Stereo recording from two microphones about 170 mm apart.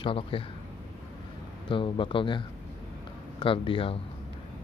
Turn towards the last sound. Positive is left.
turn(degrees=30)  # may be behind; listen again after turning